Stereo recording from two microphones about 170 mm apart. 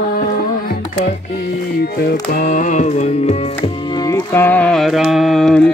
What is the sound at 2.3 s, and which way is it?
Music, 45° left (ahead or behind).